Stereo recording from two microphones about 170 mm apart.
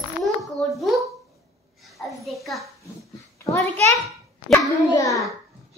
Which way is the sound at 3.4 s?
15° left (ahead or behind).